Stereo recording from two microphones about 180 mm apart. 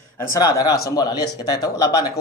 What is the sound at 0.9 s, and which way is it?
Speech, 20° left (ahead or behind).